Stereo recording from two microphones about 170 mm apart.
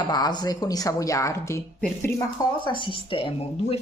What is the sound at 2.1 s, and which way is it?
Speech, 25° left (ahead or behind).